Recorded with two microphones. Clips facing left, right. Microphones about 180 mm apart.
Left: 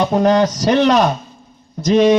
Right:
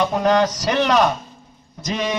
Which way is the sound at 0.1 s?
30° left (ahead or behind).